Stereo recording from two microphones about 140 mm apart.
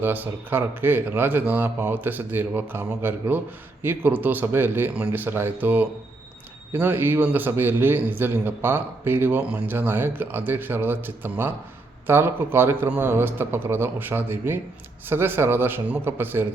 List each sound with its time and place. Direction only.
0.0 s a man's voice: 15° right (ahead or behind)